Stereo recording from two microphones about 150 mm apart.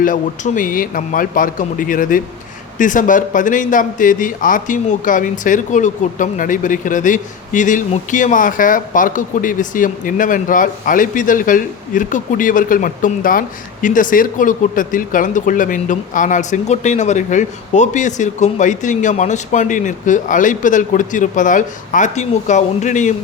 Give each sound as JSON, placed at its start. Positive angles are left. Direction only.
{"t": 0.0, "sound": "speech", "side_deg": 60}